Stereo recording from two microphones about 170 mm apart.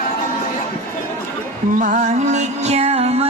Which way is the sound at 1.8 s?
45° right (ahead or behind).